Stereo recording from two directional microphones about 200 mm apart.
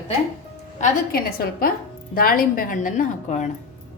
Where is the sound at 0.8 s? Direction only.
45° left (ahead or behind).